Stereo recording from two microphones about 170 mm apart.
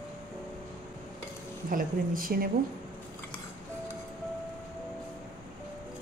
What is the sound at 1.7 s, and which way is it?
Speech, 55° right (ahead or behind).